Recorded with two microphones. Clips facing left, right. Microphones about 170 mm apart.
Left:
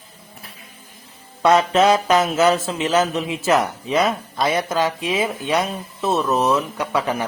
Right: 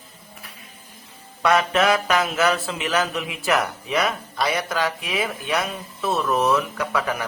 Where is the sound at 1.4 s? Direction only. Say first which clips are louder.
Left 4 dB; 25° left (ahead or behind).